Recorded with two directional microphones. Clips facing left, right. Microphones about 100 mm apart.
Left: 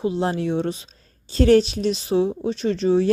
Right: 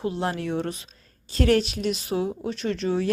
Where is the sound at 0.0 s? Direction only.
20° left (ahead or behind).